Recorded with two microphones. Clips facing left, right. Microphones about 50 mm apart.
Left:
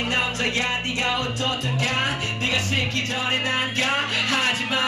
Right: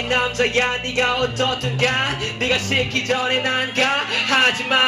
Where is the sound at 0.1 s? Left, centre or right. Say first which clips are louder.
Right 9 dB; right.